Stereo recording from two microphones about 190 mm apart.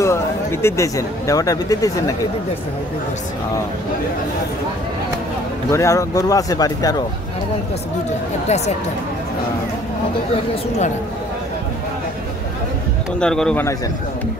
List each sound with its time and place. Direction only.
0.0 s speech: 15° left (ahead or behind)
5.7 s speech: 15° left (ahead or behind)
8.5 s speech: 35° left (ahead or behind)
13.2 s speech: 5° left (ahead or behind)